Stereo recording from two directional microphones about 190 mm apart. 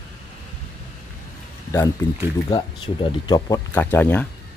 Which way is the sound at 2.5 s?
25° left (ahead or behind).